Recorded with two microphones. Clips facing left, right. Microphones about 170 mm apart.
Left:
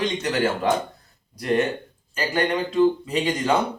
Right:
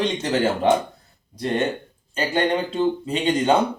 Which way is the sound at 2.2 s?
30° right (ahead or behind).